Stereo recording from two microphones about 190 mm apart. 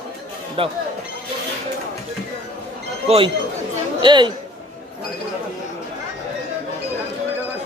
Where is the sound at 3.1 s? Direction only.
30° right (ahead or behind).